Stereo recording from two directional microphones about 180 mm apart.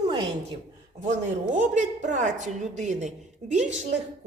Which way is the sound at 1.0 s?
40° right (ahead or behind).